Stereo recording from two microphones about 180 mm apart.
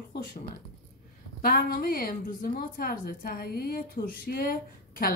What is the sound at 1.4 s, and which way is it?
A woman's voice, 55° left (ahead or behind).